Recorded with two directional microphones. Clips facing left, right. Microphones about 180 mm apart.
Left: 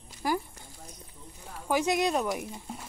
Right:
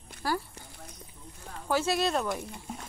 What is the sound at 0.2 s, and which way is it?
Speech, 15° left (ahead or behind).